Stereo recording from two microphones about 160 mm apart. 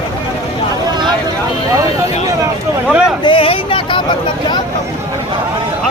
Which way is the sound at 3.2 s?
30° left (ahead or behind).